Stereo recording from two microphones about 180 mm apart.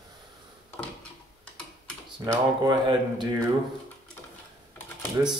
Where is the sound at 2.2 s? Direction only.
20° right (ahead or behind).